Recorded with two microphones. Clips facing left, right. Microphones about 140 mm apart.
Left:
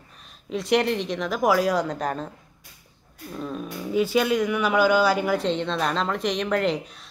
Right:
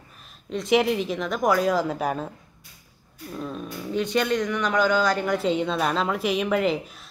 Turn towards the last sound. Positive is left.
turn(degrees=-5)  # may be behind; listen again after turning